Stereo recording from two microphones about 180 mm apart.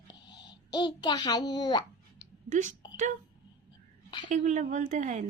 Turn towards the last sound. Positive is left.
turn(degrees=-45)  # may be behind; listen again after turning